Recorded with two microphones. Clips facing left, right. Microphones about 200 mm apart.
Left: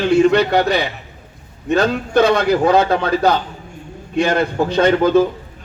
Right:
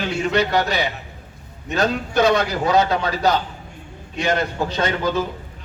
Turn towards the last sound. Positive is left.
turn(degrees=55)  # may be behind; listen again after turning